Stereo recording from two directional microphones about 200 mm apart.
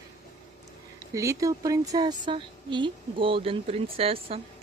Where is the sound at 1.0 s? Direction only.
15° right (ahead or behind).